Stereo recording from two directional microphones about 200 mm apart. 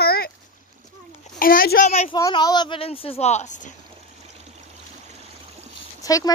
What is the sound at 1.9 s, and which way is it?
Speech, 30° left (ahead or behind).